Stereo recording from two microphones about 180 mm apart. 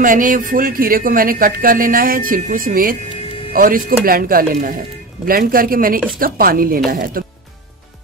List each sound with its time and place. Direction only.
0.0 s speech: 50° right (ahead or behind)